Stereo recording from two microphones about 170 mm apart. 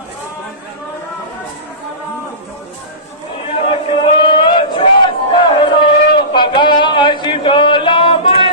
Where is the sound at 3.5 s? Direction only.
30° left (ahead or behind).